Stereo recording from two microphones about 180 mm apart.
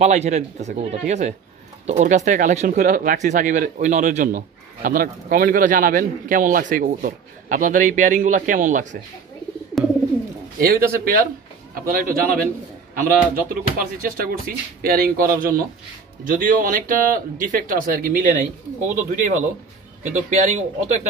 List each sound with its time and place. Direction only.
0.0 s speech: 40° right (ahead or behind)
10.6 s a man's voice: 55° right (ahead or behind)
16.3 s speech: 50° right (ahead or behind)